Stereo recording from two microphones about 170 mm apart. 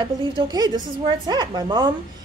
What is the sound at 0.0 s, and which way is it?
A woman's voice, 25° right (ahead or behind).